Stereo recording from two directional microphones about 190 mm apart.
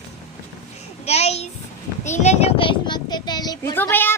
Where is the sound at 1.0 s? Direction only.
35° left (ahead or behind).